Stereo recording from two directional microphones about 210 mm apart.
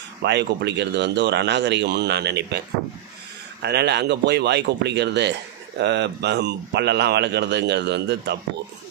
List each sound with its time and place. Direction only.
0.2 s speech: 55° right (ahead or behind)
3.6 s speech: 50° right (ahead or behind)